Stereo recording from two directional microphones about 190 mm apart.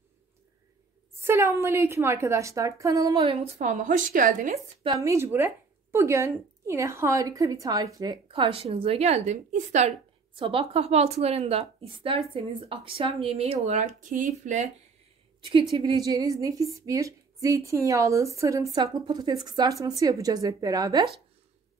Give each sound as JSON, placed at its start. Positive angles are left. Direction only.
{"t": 1.2, "sound": "a woman's voice", "side_deg": -15}
{"t": 4.8, "sound": "a woman's voice", "side_deg": -15}
{"t": 15.8, "sound": "a woman's voice", "side_deg": -20}